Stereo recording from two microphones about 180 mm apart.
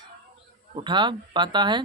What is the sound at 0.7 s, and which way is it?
Speech, 25° right (ahead or behind).